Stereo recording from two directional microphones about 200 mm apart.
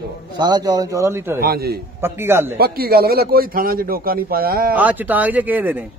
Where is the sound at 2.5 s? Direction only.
50° right (ahead or behind).